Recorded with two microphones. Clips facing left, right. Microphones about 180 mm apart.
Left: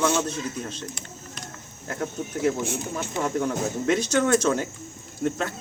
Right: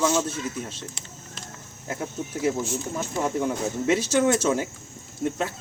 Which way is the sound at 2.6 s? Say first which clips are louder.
Even; 60° left (ahead or behind).